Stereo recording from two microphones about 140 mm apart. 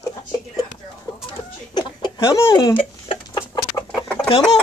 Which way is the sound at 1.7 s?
30° left (ahead or behind).